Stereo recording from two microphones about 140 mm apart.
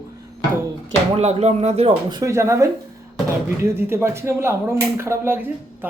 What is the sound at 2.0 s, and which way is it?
Speech, 30° right (ahead or behind).